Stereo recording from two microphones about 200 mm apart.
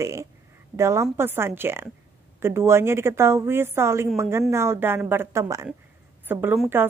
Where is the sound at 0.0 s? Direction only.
15° right (ahead or behind).